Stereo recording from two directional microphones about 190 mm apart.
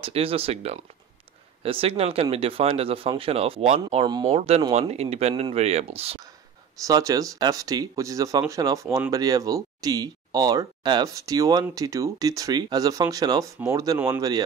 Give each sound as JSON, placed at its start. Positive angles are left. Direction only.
{"t": 0.0, "sound": "speech", "side_deg": -30}
{"t": 6.8, "sound": "speech", "side_deg": -20}